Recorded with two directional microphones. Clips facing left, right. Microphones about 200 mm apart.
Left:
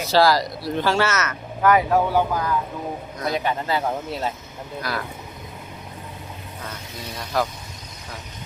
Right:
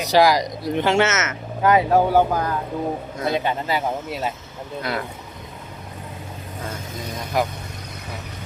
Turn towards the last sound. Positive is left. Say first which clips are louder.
# right 1 dB
turn(degrees=-15)  # may be behind; listen again after turning